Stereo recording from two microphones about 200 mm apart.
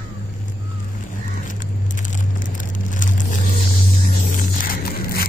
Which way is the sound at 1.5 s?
40° left (ahead or behind).